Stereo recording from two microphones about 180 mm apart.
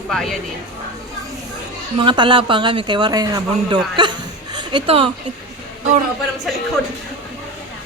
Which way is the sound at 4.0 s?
25° right (ahead or behind).